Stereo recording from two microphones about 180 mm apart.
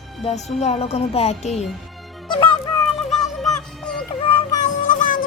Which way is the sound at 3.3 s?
Centre (ahead or behind).